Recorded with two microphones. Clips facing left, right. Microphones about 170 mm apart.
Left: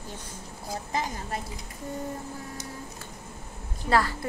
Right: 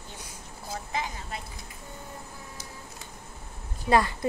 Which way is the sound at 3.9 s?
20° right (ahead or behind).